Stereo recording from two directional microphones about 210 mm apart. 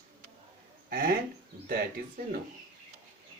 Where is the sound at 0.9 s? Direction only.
45° right (ahead or behind).